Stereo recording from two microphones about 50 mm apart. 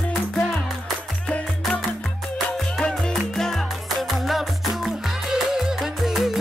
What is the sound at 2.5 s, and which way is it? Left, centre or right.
Music, centre.